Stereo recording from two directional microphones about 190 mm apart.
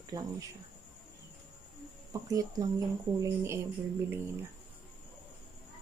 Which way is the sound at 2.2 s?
15° right (ahead or behind).